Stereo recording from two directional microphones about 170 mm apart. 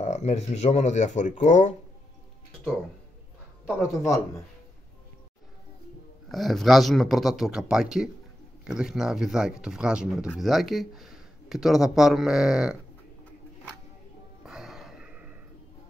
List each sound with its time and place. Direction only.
0.0 s speech: 40° left (ahead or behind)
3.9 s a man's voice: 20° left (ahead or behind)
6.2 s speech: centre (ahead or behind)
14.4 s a sound: 5° right (ahead or behind)